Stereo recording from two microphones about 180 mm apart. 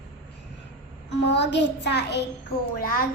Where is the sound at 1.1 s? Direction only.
75° left (ahead or behind).